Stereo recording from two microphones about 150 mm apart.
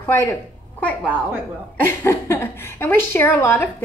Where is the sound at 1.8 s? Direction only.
15° left (ahead or behind).